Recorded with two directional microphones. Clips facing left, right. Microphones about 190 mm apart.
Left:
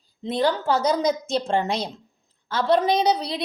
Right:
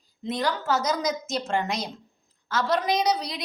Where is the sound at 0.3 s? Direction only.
30° left (ahead or behind).